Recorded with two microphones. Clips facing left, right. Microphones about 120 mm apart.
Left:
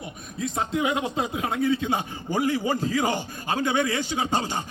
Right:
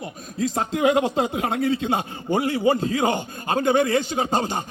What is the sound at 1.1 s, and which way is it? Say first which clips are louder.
A man's voice: right 4 dB; 65° right (ahead or behind).